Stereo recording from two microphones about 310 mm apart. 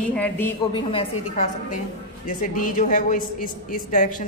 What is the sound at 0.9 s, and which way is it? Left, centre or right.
A man's voice, left.